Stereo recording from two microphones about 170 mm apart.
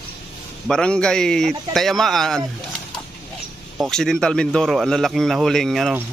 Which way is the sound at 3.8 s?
5° left (ahead or behind).